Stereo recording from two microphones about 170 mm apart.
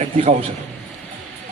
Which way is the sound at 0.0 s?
35° right (ahead or behind).